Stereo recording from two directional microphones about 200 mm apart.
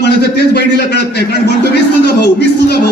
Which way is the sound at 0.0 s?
55° left (ahead or behind).